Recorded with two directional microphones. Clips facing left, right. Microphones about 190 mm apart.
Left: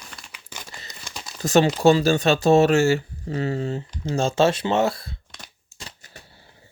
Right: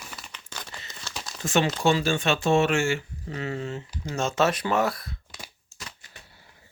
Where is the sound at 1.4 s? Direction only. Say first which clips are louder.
Left 6 dB; 35° left (ahead or behind).